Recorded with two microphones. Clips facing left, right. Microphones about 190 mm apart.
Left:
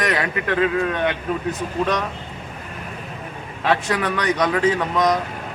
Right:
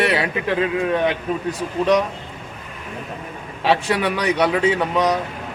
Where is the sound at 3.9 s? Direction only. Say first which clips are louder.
Right 2 dB; 10° right (ahead or behind).